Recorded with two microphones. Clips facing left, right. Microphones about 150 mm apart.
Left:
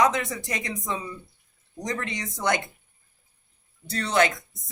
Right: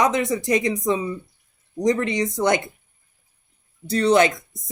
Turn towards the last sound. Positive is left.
turn(degrees=-20)  # may be behind; listen again after turning